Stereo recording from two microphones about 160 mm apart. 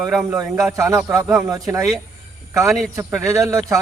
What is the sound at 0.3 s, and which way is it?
Speech, 20° right (ahead or behind).